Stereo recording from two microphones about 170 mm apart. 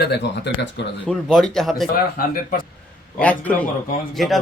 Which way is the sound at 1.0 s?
5° left (ahead or behind).